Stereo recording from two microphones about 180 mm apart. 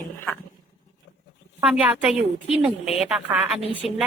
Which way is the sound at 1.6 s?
5° right (ahead or behind).